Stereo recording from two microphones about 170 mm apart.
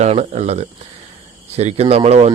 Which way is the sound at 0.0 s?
40° right (ahead or behind).